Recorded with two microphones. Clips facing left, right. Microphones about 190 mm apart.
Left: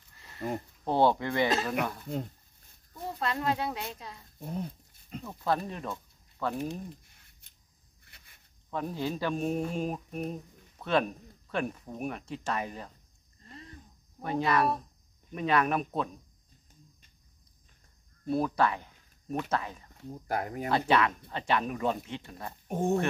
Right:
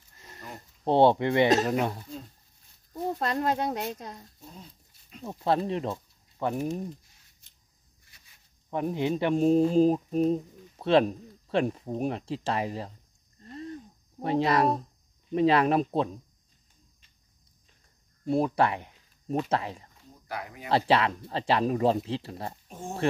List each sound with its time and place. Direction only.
0.4 s speech: 55° left (ahead or behind)
0.8 s speech: 25° right (ahead or behind)
1.5 s speech: 40° right (ahead or behind)
2.9 s speech: 45° right (ahead or behind)
4.4 s speech: 60° left (ahead or behind)
5.2 s speech: 25° right (ahead or behind)
8.1 s a sound: 60° left (ahead or behind)
8.6 s speech: 20° right (ahead or behind)
14.2 s speech: 25° right (ahead or behind)
18.2 s speech: 25° right (ahead or behind)
20.2 s speech: 45° left (ahead or behind)
20.7 s speech: 30° right (ahead or behind)
22.7 s speech: 60° left (ahead or behind)